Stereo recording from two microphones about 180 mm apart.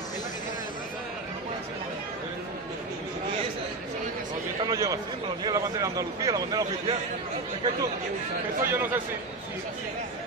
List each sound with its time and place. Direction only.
4.6 s a man's voice: 20° right (ahead or behind)
8.6 s a man's voice: 10° right (ahead or behind)